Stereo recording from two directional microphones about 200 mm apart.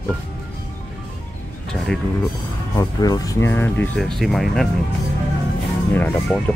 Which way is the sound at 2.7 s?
20° left (ahead or behind).